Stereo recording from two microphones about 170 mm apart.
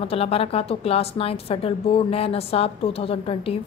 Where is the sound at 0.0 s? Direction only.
35° left (ahead or behind).